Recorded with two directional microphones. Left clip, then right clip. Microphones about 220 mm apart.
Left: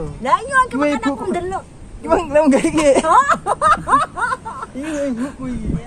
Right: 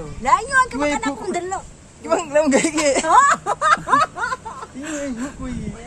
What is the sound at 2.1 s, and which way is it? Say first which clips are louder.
Speech: left 3 dB; 35° left (ahead or behind).